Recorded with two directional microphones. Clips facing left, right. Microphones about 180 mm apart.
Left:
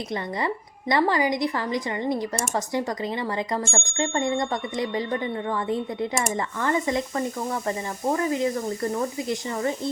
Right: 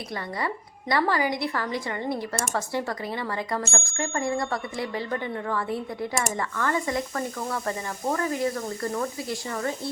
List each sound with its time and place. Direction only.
0.1 s a woman's voice: 20° left (ahead or behind)